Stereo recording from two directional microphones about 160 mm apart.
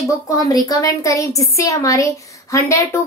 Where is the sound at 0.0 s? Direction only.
20° left (ahead or behind).